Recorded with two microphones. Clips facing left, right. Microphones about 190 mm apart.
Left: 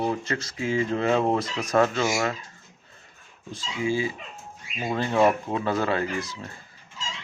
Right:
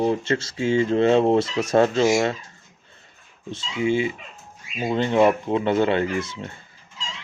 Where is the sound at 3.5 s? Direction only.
25° right (ahead or behind).